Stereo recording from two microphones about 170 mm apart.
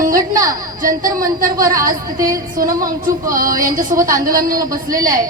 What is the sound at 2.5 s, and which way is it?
A woman's voice, 55° right (ahead or behind).